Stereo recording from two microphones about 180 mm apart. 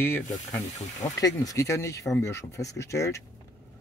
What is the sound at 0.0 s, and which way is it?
Speech, 10° left (ahead or behind).